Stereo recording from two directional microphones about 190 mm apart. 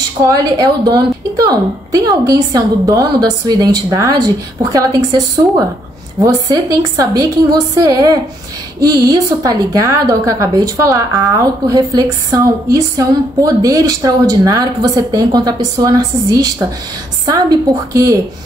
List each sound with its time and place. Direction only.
0.3 s a woman's voice: 20° right (ahead or behind)
6.2 s a woman's voice: 20° right (ahead or behind)